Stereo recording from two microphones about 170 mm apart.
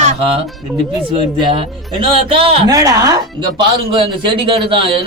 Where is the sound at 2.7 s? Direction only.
20° right (ahead or behind).